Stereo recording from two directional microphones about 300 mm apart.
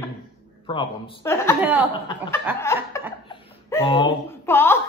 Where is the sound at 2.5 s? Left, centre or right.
Centre.